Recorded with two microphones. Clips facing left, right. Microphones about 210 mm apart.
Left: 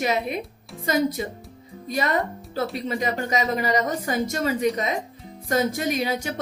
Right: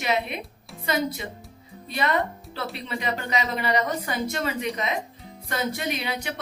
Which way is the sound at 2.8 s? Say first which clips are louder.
Left 4 dB; 40° left (ahead or behind).